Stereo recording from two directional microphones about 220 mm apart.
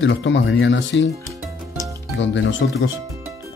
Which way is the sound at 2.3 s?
55° left (ahead or behind).